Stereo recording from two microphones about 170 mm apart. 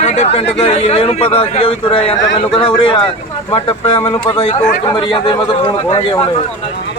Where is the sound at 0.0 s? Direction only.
40° left (ahead or behind).